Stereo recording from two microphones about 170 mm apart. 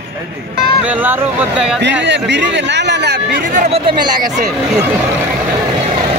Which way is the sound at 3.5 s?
35° right (ahead or behind).